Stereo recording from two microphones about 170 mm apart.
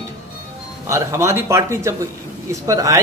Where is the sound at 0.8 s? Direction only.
15° right (ahead or behind).